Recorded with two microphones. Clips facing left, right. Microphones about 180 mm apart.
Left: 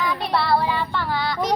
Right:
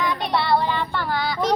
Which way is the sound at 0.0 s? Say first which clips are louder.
Even; 5° left (ahead or behind).